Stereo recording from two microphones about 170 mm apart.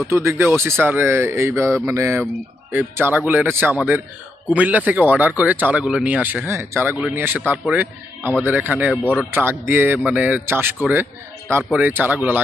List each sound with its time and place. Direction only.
0.1 s speech: 15° right (ahead or behind)